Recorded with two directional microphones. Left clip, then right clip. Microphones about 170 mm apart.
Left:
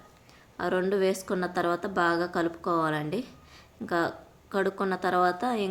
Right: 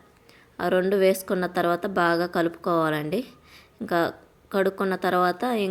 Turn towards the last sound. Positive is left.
turn(degrees=-25)  # may be behind; listen again after turning